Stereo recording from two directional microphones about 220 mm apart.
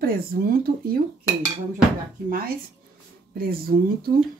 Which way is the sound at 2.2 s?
40° right (ahead or behind).